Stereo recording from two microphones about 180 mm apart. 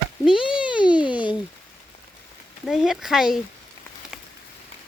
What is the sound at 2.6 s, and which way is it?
Speech, centre (ahead or behind).